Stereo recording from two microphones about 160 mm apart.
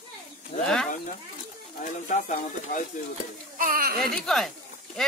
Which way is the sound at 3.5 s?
65° right (ahead or behind).